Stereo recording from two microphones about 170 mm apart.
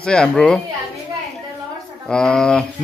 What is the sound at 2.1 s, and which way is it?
Speech, 5° left (ahead or behind).